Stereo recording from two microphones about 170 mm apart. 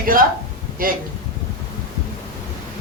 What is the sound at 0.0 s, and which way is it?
Speech, 55° right (ahead or behind).